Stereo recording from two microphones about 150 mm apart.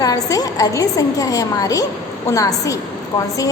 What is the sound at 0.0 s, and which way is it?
A woman's voice, 25° left (ahead or behind).